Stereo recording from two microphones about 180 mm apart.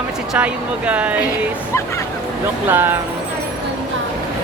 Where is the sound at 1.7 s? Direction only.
15° left (ahead or behind).